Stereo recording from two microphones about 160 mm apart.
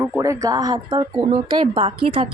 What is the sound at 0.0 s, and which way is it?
A woman's voice, 15° right (ahead or behind).